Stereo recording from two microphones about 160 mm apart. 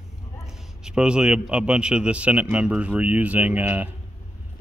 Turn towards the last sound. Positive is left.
turn(degrees=-10)  # may be behind; listen again after turning